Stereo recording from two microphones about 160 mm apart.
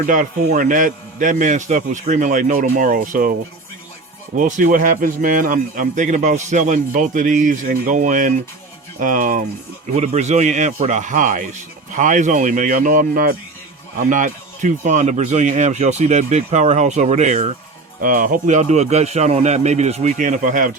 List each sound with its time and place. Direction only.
0.0 s a man's voice: 55° right (ahead or behind)
4.4 s a man's voice: 55° right (ahead or behind)
9.9 s a man's voice: 45° right (ahead or behind)
18.0 s a man's voice: 60° right (ahead or behind)